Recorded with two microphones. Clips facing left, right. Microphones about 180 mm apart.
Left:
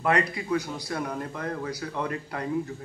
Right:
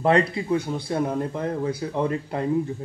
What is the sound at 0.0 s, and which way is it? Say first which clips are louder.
A man's voice: right 5 dB; 30° right (ahead or behind).